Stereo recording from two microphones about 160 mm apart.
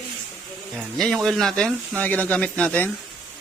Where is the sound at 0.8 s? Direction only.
Centre (ahead or behind).